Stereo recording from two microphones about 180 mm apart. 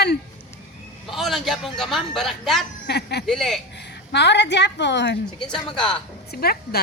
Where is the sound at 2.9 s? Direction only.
65° left (ahead or behind).